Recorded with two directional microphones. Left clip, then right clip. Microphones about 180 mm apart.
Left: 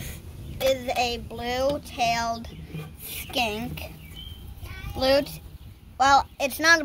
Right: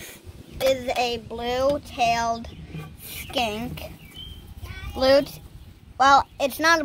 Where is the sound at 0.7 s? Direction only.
25° right (ahead or behind).